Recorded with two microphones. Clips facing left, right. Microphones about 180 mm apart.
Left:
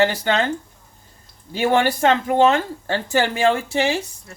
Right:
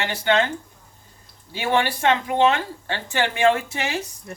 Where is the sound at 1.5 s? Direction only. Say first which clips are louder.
Left 4 dB; 45° left (ahead or behind).